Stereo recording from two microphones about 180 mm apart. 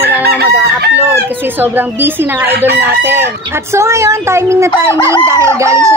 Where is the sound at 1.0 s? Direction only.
10° right (ahead or behind).